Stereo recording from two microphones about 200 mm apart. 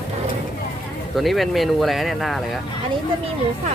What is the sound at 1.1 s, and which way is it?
Speech, centre (ahead or behind).